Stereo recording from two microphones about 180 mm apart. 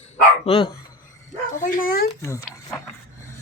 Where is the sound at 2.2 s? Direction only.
15° left (ahead or behind).